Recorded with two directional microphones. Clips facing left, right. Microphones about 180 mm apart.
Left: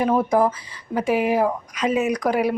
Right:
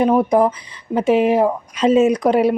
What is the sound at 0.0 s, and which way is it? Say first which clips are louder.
Speech: right 4 dB; 20° right (ahead or behind).